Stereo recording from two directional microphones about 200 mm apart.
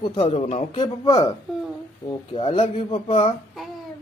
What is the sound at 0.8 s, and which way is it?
Speech, 20° left (ahead or behind).